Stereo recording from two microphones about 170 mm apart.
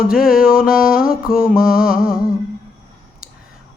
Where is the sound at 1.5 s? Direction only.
60° left (ahead or behind).